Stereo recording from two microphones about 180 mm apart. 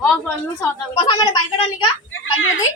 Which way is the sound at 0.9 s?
20° left (ahead or behind).